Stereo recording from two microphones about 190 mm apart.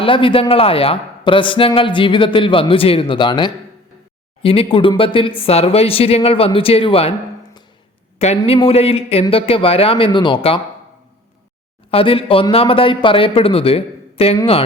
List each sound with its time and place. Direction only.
0.0 s a man's voice: 25° left (ahead or behind)
8.4 s a man's voice: 25° left (ahead or behind)
11.9 s a man's voice: 30° left (ahead or behind)